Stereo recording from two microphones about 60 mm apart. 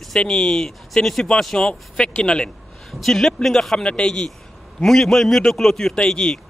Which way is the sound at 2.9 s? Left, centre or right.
Centre.